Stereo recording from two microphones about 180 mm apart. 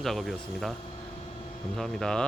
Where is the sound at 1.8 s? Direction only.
5° left (ahead or behind).